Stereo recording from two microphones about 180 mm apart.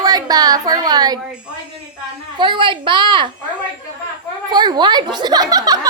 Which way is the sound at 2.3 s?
25° right (ahead or behind).